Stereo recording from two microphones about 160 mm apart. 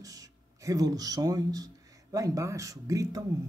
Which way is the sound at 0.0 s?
20° right (ahead or behind).